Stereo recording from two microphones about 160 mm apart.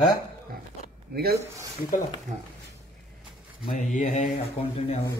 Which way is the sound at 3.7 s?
50° left (ahead or behind).